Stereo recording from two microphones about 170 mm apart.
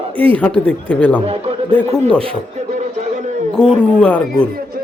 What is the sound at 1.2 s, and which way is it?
Speech, 35° right (ahead or behind).